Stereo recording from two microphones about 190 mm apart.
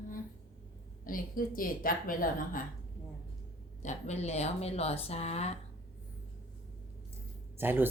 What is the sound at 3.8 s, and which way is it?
A woman's voice, 40° left (ahead or behind).